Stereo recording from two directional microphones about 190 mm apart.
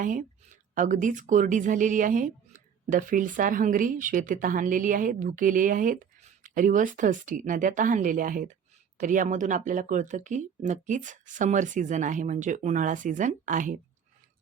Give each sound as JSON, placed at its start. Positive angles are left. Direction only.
{"t": 0.0, "sound": "a woman's voice", "side_deg": -45}